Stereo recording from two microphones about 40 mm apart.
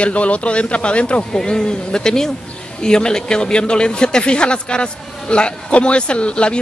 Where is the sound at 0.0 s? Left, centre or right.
Left.